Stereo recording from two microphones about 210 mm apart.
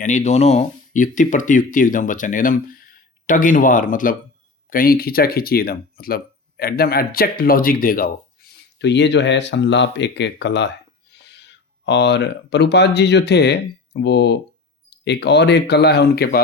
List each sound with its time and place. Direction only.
0.0 s speech: 35° left (ahead or behind)